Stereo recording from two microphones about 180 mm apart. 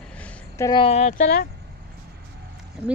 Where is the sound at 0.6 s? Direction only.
30° left (ahead or behind).